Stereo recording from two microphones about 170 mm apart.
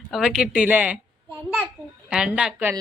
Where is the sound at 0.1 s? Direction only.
5° right (ahead or behind).